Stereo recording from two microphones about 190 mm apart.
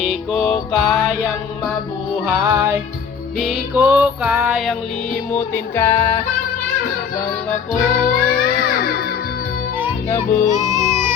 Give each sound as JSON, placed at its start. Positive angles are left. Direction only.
{"t": 0.0, "sound": "music", "side_deg": 0}
{"t": 2.2, "sound": "music", "side_deg": -10}
{"t": 3.3, "sound": "music", "side_deg": 0}
{"t": 5.3, "sound": "music", "side_deg": 10}
{"t": 7.7, "sound": "music", "side_deg": 45}
{"t": 10.2, "sound": "music", "side_deg": 45}
{"t": 10.5, "sound": "music", "side_deg": -15}